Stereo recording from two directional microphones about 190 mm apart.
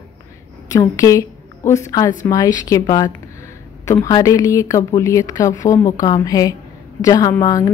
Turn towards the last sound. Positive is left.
turn(degrees=20)  # may be behind; listen again after turning